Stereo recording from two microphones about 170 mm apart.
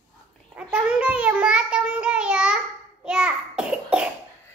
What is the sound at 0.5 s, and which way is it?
Child singing, 5° right (ahead or behind).